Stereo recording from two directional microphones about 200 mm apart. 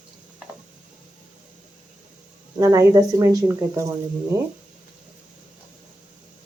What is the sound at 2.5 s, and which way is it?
Speech, 15° right (ahead or behind).